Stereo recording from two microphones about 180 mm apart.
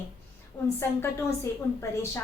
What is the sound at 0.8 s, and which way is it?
Speech, 15° left (ahead or behind).